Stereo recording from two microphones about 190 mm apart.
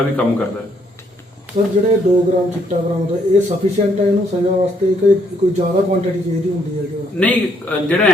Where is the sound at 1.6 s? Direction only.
35° right (ahead or behind).